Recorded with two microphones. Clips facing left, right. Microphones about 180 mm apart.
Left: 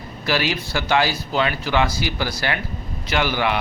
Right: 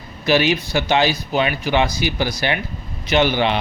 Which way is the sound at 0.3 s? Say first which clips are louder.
Right 6 dB; 20° right (ahead or behind).